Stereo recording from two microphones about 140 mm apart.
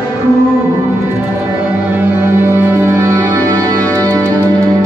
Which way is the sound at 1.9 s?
15° right (ahead or behind).